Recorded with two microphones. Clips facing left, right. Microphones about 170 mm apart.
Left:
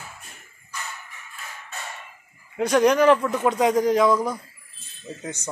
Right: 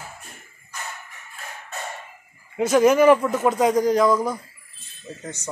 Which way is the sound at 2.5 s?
5° right (ahead or behind).